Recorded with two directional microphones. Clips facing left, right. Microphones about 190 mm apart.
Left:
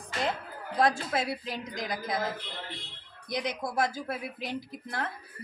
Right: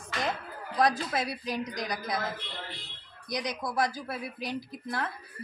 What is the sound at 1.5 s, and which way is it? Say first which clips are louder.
Speech: right 2 dB; 25° left (ahead or behind).